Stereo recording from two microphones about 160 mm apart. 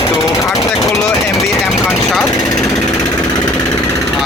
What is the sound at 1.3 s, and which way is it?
Speech, centre (ahead or behind).